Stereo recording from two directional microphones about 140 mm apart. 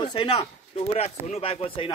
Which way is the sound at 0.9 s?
50° left (ahead or behind).